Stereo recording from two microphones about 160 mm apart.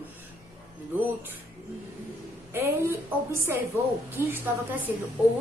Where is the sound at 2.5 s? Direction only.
15° right (ahead or behind).